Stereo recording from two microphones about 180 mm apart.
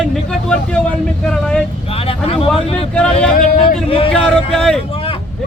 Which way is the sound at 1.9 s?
30° left (ahead or behind).